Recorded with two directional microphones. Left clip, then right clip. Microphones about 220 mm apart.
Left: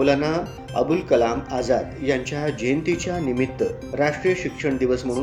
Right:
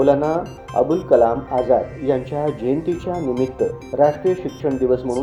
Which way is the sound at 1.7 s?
5° left (ahead or behind).